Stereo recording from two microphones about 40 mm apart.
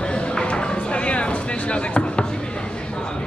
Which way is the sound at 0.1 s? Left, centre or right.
Left.